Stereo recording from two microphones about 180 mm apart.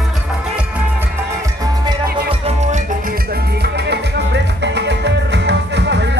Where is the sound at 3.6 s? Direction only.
70° right (ahead or behind).